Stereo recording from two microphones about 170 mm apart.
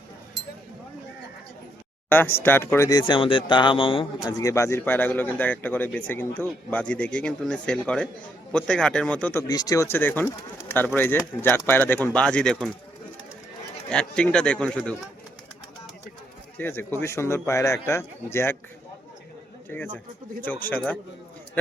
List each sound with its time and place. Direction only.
2.0 s speech: 10° left (ahead or behind)
9.5 s speech: 20° left (ahead or behind); by 12.7 s 5° left (ahead or behind)
13.9 s speech: 5° left (ahead or behind)
16.6 s speech: 15° left (ahead or behind)
20.7 s speech: 10° left (ahead or behind)